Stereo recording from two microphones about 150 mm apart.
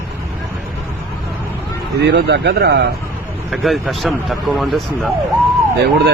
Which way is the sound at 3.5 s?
Centre (ahead or behind).